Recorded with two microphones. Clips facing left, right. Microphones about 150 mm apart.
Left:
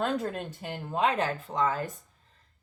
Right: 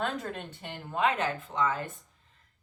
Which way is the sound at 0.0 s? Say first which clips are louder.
Left 4 dB; 35° left (ahead or behind).